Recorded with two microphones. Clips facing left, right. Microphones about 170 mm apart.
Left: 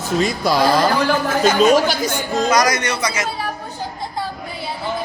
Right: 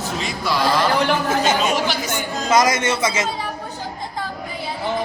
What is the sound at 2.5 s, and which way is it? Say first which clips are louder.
Speech: right 3 dB; 25° right (ahead or behind).